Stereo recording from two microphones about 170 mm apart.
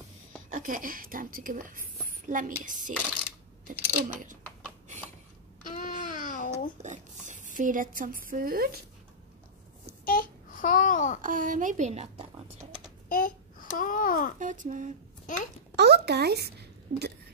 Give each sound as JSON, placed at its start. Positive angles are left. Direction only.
{"t": 0.5, "sound": "a woman's voice", "side_deg": -50}
{"t": 3.9, "sound": "a woman's voice", "side_deg": -50}
{"t": 5.8, "sound": "babbling", "side_deg": 50}
{"t": 6.8, "sound": "a sound", "side_deg": -45}
{"t": 10.0, "sound": "babbling", "side_deg": 55}
{"t": 11.1, "sound": "a woman's voice", "side_deg": -50}
{"t": 13.1, "sound": "babbling", "side_deg": 55}
{"t": 14.4, "sound": "a woman's voice", "side_deg": -50}
{"t": 15.2, "sound": "a child's voice", "side_deg": 50}
{"t": 15.7, "sound": "a sound", "side_deg": -75}